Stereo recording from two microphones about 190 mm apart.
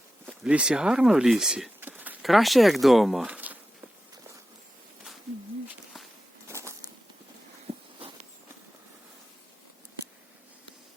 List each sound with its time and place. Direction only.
0.3 s speech: 5° right (ahead or behind)
6.5 s a sound: 15° right (ahead or behind)
7.9 s walk: 30° right (ahead or behind)